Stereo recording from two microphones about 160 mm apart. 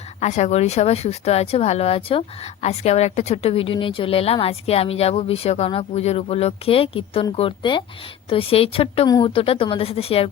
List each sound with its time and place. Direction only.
0.2 s speech: 45° left (ahead or behind)